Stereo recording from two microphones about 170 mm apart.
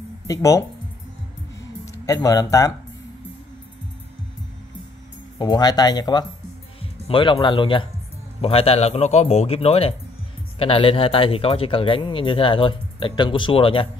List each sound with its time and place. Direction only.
0.3 s speech: 20° left (ahead or behind)
1.9 s speech: 20° left (ahead or behind)
5.4 s speech: 25° left (ahead or behind)